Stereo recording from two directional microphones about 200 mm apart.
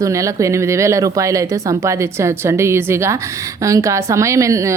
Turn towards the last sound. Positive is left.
turn(degrees=-15)  # may be behind; listen again after turning